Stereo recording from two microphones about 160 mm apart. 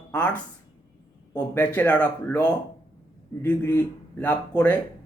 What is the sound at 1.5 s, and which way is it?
Speech, 10° left (ahead or behind).